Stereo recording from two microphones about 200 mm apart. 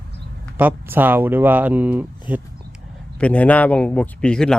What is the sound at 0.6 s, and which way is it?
Speech, 10° right (ahead or behind).